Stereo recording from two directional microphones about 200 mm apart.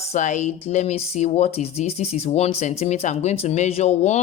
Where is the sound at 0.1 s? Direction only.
35° left (ahead or behind).